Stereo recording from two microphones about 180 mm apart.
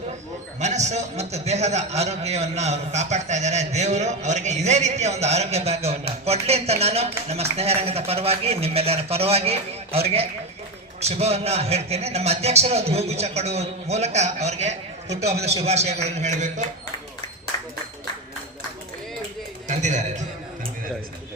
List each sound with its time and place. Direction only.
0.6 s a man's voice: 40° right (ahead or behind)
11.0 s a man's voice: 35° right (ahead or behind)
17.5 s a sound: 20° left (ahead or behind)
19.6 s a man's voice: 40° right (ahead or behind)